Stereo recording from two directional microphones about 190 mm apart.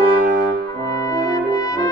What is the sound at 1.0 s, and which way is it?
Brass instrument, 15° left (ahead or behind).